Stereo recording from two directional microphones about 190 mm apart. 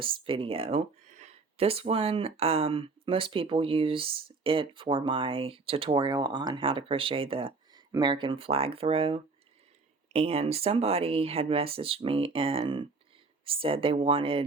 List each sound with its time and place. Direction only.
0.0 s speech: 30° right (ahead or behind)